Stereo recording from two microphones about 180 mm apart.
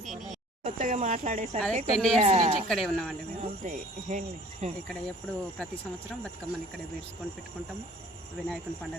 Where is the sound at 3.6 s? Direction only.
45° right (ahead or behind).